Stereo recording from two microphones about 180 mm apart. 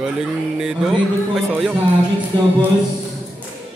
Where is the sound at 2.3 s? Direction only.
25° right (ahead or behind).